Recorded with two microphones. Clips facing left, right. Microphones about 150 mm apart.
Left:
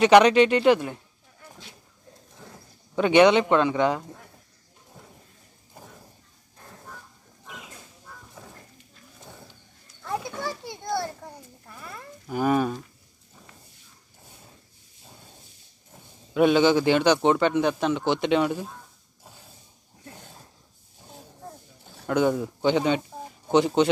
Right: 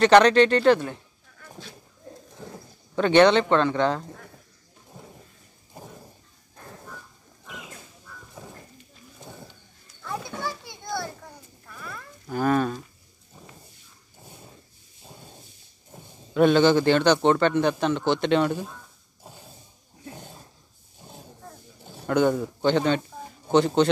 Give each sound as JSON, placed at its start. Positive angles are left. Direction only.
{"t": 0.0, "sound": "a man's voice", "side_deg": 10}
{"t": 3.0, "sound": "a man's voice", "side_deg": 10}
{"t": 8.4, "sound": "a sound", "side_deg": -15}
{"t": 10.0, "sound": "children playing", "side_deg": 35}
{"t": 12.3, "sound": "a man's voice", "side_deg": 10}
{"t": 16.3, "sound": "a man's voice", "side_deg": 5}
{"t": 22.0, "sound": "a man's voice", "side_deg": 5}